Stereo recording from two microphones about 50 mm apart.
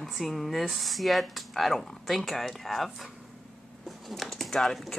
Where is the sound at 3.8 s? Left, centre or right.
Centre.